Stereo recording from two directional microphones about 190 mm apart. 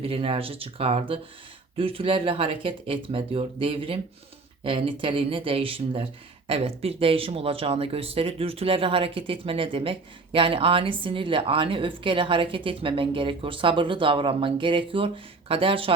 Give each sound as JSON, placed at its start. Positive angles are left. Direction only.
{"t": 0.0, "sound": "a woman's voice", "side_deg": -30}